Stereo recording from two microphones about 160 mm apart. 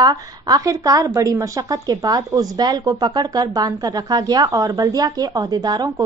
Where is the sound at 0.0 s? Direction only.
25° right (ahead or behind).